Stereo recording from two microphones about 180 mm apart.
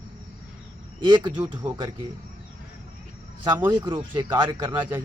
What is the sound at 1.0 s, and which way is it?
Speech, 25° right (ahead or behind).